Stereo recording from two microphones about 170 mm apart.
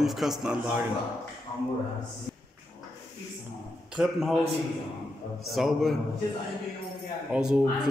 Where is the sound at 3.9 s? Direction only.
5° right (ahead or behind).